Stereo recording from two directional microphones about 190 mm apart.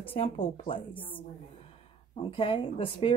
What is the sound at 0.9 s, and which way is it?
Speech, 10° left (ahead or behind).